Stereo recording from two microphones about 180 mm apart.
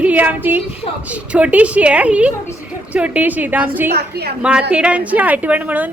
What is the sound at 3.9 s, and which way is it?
Speech, 60° right (ahead or behind).